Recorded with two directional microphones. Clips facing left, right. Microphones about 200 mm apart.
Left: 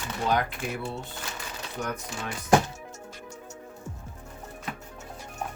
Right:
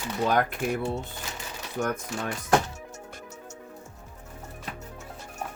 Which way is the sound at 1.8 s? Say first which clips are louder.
Right 5 dB; 50° right (ahead or behind).